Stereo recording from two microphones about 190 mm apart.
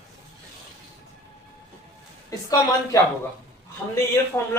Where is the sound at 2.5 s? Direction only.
20° left (ahead or behind).